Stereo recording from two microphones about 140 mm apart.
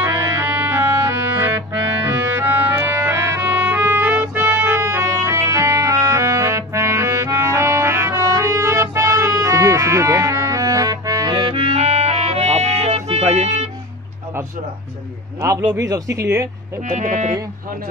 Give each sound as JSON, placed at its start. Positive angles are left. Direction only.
{"t": 0.0, "sound": "music", "side_deg": -15}
{"t": 2.2, "sound": "music", "side_deg": -15}
{"t": 11.3, "sound": "music", "side_deg": -40}
{"t": 15.4, "sound": "speech", "side_deg": -25}
{"t": 16.8, "sound": "speech", "side_deg": -70}